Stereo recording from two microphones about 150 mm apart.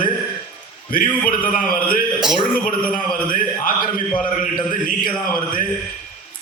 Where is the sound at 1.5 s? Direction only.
65° left (ahead or behind).